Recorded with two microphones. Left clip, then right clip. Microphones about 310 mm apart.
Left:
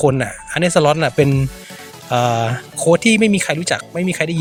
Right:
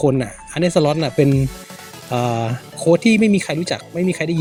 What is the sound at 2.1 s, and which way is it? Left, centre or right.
Speech, left.